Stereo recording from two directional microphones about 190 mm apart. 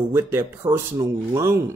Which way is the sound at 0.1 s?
15° right (ahead or behind).